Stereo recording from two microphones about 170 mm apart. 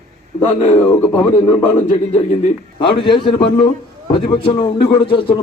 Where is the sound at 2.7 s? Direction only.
30° left (ahead or behind).